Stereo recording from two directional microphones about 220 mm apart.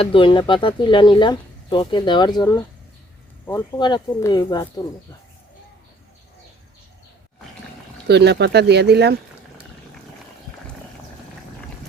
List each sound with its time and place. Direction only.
0.0 s speech: 25° left (ahead or behind)
8.0 s speech: 50° right (ahead or behind)